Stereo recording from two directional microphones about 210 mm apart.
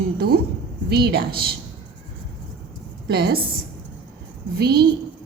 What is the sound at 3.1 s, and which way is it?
Speech, 50° right (ahead or behind).